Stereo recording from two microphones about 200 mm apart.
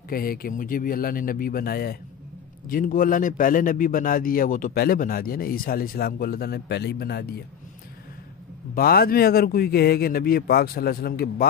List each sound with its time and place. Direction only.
0.1 s a man's voice: 45° left (ahead or behind)
8.7 s a man's voice: 50° left (ahead or behind)